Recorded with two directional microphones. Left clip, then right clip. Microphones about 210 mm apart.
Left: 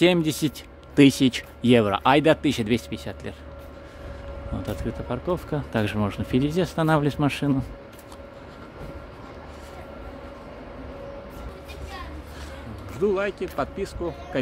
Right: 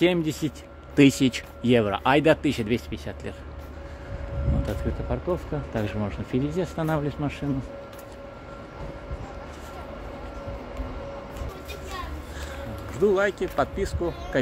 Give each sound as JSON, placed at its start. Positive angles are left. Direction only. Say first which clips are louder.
{"t": 0.0, "sound": "speech", "louder": "left 3 dB", "side_deg": 25}
{"t": 0.9, "sound": "speech", "louder": "left 2 dB", "side_deg": 15}
{"t": 4.6, "sound": "speech", "louder": "left 3 dB", "side_deg": 20}
{"t": 13.0, "sound": "speech", "louder": "right 2 dB", "side_deg": -10}